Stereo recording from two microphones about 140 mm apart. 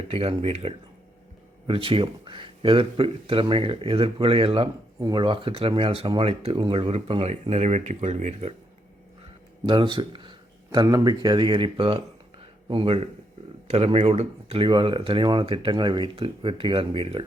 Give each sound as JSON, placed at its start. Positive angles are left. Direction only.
{"t": 0.1, "sound": "speech", "side_deg": -45}
{"t": 4.9, "sound": "speech", "side_deg": -30}
{"t": 9.6, "sound": "a sound", "side_deg": -35}
{"t": 10.8, "sound": "speech", "side_deg": -25}